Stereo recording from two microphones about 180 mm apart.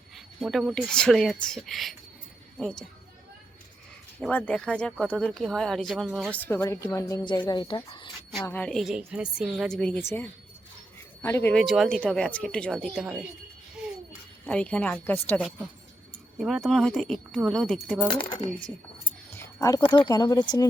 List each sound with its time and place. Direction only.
0.3 s a woman's voice: centre (ahead or behind)
4.2 s speech: 10° left (ahead or behind); by 8.1 s 25° left (ahead or behind)
8.4 s a woman's voice: 10° left (ahead or behind)
11.5 s a woman's voice: centre (ahead or behind)
13.8 s a sound: 5° right (ahead or behind)
14.4 s a woman's voice: 5° left (ahead or behind)
19.4 s speech: 20° left (ahead or behind)